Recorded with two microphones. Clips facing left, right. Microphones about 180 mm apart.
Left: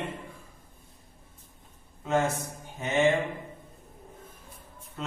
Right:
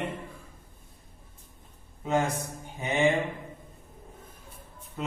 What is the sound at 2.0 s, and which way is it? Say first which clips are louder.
Speech: even; 15° right (ahead or behind).